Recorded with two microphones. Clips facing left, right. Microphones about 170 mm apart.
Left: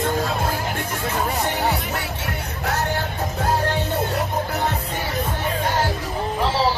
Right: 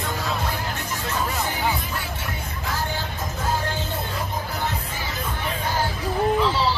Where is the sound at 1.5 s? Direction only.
70° left (ahead or behind).